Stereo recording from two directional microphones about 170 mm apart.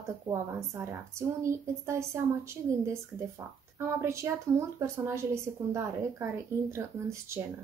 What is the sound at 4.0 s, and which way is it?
A woman's voice, 15° right (ahead or behind).